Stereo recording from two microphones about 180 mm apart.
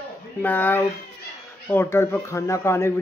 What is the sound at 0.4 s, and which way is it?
Speech, 10° left (ahead or behind).